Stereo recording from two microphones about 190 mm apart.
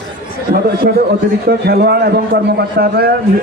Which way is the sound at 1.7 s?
55° right (ahead or behind).